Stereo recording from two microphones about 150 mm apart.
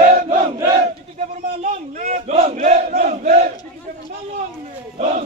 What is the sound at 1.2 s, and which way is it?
Battle cry, 55° right (ahead or behind).